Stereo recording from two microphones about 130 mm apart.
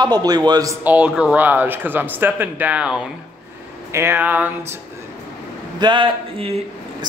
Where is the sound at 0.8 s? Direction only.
10° right (ahead or behind).